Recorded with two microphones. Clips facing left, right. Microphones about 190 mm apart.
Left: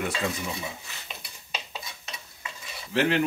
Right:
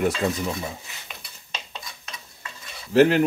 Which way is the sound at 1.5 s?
5° left (ahead or behind).